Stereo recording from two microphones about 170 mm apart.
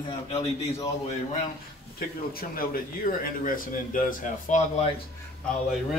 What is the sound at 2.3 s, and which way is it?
A man's voice, 60° left (ahead or behind).